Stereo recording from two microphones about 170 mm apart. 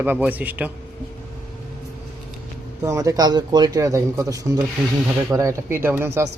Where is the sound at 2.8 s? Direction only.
20° right (ahead or behind).